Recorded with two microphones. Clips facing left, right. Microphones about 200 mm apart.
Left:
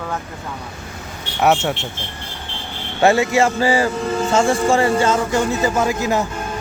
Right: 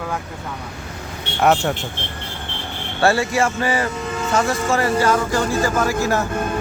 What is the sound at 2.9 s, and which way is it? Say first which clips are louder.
Speech: left 3 dB; 20° left (ahead or behind).